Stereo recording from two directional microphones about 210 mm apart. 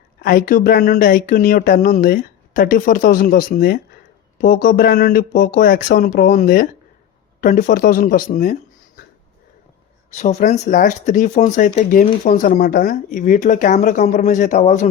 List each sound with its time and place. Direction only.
0.2 s speech: 45° left (ahead or behind)
10.1 s speech: 35° left (ahead or behind)